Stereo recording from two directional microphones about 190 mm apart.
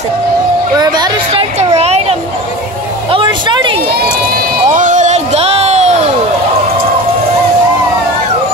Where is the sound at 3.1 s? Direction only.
25° right (ahead or behind).